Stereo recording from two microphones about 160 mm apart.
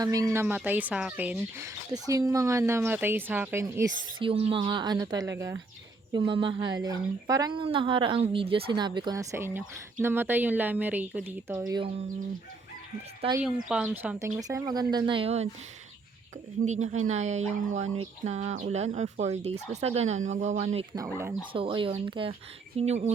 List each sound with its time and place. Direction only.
0.0 s speech: 20° right (ahead or behind)
0.4 s speech: 10° right (ahead or behind)
4.2 s speech: 35° right (ahead or behind)
13.4 s speech: 5° right (ahead or behind); by 15.4 s 40° right (ahead or behind)
16.6 s speech: 45° right (ahead or behind)
20.9 s speech: 20° right (ahead or behind)
21.5 s speech: 35° right (ahead or behind)
22.8 s speech: 45° right (ahead or behind)